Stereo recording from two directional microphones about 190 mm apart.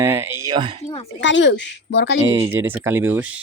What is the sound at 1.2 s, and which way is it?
Speech, 70° left (ahead or behind).